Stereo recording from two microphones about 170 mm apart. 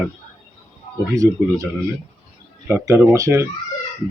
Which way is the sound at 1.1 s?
20° right (ahead or behind).